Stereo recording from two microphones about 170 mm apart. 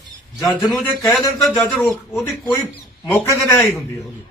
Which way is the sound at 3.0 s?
15° left (ahead or behind).